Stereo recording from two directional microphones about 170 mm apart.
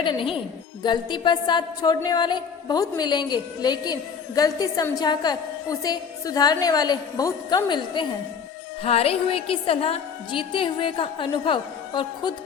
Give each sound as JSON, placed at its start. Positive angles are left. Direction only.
{"t": 0.0, "sound": "a woman's voice", "side_deg": 30}